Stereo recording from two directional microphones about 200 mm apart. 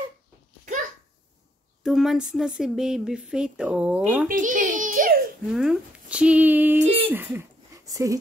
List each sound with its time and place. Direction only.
1.8 s speech: centre (ahead or behind)
4.3 s a sound: 40° right (ahead or behind)
5.5 s speech: 5° right (ahead or behind)